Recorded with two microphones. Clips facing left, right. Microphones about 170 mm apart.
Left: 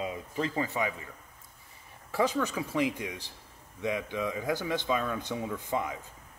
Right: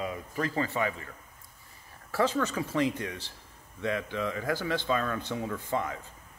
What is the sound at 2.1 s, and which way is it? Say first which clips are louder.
Speech: right 1 dB; 15° left (ahead or behind).